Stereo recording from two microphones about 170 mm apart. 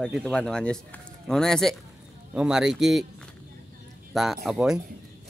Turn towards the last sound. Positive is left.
turn(degrees=0)  # may be behind; listen again after turning